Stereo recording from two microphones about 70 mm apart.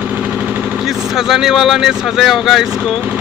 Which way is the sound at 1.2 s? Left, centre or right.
Centre.